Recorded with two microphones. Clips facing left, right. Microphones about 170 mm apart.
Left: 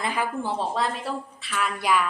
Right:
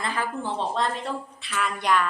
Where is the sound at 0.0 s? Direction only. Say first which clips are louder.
Left 2 dB; 15° left (ahead or behind).